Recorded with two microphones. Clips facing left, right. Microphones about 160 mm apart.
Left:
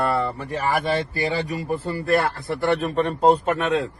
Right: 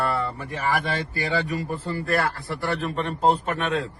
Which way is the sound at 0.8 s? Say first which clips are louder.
Left 5 dB; 40° left (ahead or behind).